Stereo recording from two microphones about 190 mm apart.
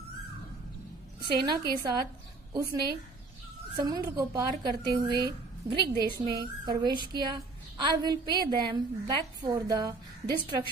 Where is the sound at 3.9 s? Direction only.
20° right (ahead or behind).